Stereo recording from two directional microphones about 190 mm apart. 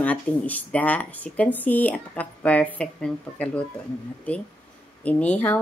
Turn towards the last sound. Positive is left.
turn(degrees=5)  # may be behind; listen again after turning